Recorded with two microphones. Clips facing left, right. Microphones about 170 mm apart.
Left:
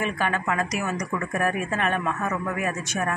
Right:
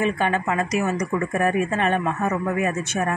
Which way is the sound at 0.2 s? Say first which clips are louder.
Right 3 dB; 30° right (ahead or behind).